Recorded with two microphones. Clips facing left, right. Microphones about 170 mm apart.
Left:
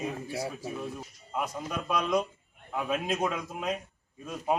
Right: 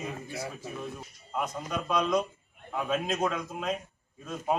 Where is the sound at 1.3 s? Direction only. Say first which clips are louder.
Right 1 dB; 10° left (ahead or behind).